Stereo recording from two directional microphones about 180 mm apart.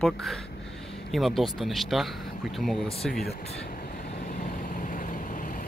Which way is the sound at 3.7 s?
50° left (ahead or behind).